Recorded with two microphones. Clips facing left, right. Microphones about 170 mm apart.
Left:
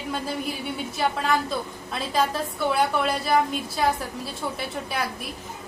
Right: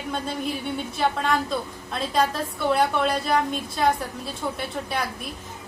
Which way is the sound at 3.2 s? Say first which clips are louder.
Left 1 dB; 5° left (ahead or behind).